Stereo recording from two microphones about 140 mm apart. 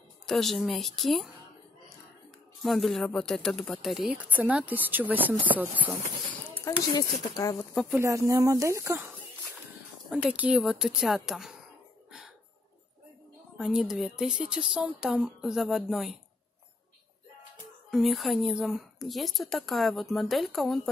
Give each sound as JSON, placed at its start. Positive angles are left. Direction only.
{"t": 0.3, "sound": "a woman's voice", "side_deg": 0}
{"t": 2.6, "sound": "a woman's voice", "side_deg": 0}
{"t": 6.7, "sound": "speech", "side_deg": 20}
{"t": 7.9, "sound": "speech", "side_deg": -20}
{"t": 10.0, "sound": "a woman's voice", "side_deg": -5}
{"t": 13.6, "sound": "a woman's voice", "side_deg": 0}
{"t": 17.9, "sound": "a woman's voice", "side_deg": 0}